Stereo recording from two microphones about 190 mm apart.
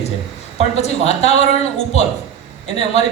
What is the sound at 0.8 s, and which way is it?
A man's voice, 35° left (ahead or behind).